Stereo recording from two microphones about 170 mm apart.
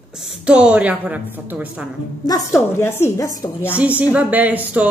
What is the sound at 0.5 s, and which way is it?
A woman's voice, 5° right (ahead or behind).